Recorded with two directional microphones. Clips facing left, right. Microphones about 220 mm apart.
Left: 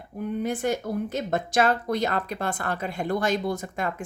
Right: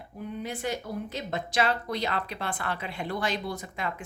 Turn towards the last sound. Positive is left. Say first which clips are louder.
# left 5 dB
turn(degrees=45)  # may be behind; listen again after turning